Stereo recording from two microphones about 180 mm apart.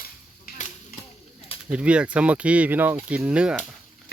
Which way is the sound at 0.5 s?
60° left (ahead or behind).